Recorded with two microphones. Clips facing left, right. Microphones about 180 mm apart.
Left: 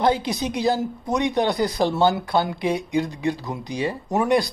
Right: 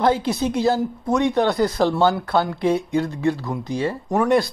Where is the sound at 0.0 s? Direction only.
15° left (ahead or behind).